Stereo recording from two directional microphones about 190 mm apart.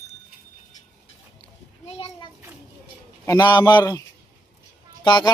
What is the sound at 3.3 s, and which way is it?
A man's voice, 20° left (ahead or behind).